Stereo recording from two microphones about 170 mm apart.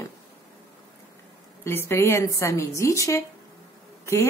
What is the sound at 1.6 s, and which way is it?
A woman's voice, 15° left (ahead or behind).